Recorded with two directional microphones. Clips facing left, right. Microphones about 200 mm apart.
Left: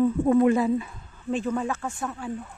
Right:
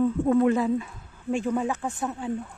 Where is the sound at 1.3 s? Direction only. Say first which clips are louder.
Right 1 dB; 15° right (ahead or behind).